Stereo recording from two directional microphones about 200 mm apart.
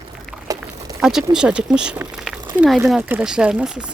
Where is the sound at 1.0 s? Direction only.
5° right (ahead or behind).